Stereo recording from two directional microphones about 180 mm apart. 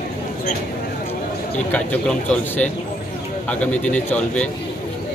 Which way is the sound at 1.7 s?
10° left (ahead or behind).